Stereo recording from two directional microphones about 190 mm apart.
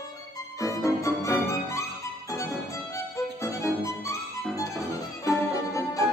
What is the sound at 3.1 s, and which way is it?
Music, 15° left (ahead or behind).